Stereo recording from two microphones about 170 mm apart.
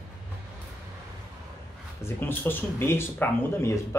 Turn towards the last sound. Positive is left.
turn(degrees=15)  # may be behind; listen again after turning